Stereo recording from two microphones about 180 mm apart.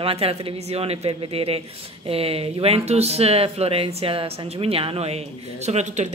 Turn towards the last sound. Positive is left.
turn(degrees=-40)  # may be behind; listen again after turning